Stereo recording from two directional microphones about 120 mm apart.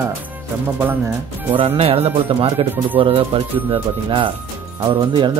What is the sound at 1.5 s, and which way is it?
Speech, 50° right (ahead or behind).